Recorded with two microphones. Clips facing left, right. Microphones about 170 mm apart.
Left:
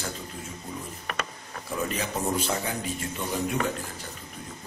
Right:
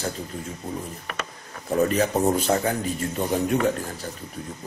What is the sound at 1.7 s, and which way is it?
Speech, 45° right (ahead or behind).